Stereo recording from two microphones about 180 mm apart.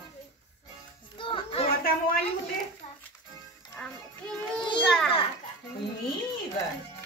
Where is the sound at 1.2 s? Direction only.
30° left (ahead or behind).